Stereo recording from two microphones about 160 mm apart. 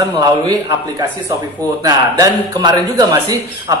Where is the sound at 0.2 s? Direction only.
20° right (ahead or behind).